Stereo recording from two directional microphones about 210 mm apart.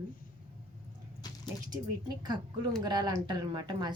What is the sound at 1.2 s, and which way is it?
Squish, 20° left (ahead or behind).